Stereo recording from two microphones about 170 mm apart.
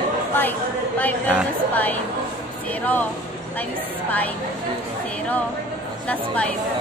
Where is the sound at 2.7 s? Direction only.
10° left (ahead or behind).